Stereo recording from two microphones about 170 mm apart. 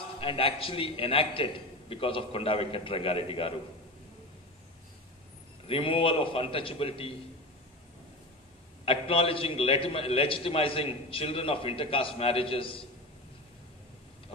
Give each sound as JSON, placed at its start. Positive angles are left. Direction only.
{"t": 0.2, "sound": "a man's voice", "side_deg": 30}
{"t": 5.7, "sound": "a man's voice", "side_deg": 30}
{"t": 8.8, "sound": "a man's voice", "side_deg": 35}